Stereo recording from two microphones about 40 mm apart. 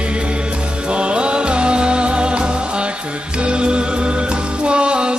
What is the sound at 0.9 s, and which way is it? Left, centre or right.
Music, right.